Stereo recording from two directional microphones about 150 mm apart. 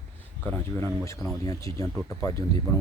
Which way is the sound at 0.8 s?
15° left (ahead or behind).